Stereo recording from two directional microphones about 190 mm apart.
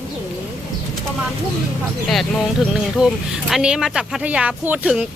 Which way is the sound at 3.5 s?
5° right (ahead or behind).